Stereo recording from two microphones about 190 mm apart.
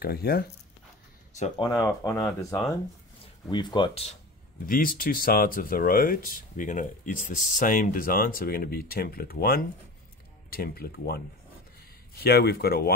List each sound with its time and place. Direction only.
0.0 s speech: 55° left (ahead or behind)
1.6 s speech: 15° left (ahead or behind)
4.6 s speech: 50° left (ahead or behind)